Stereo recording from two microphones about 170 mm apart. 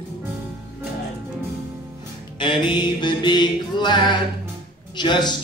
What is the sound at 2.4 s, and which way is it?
Music, 30° left (ahead or behind).